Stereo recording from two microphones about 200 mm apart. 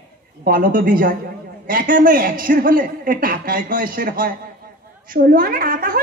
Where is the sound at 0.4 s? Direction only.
45° right (ahead or behind).